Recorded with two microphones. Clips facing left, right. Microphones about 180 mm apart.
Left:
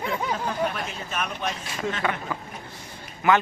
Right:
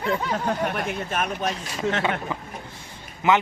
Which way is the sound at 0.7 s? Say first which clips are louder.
Right 5 dB; 55° right (ahead or behind).